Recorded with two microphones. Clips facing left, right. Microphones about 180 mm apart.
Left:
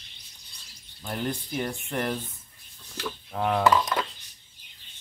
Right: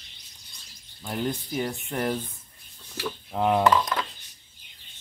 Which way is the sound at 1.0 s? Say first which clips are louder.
Right 2 dB; 15° right (ahead or behind).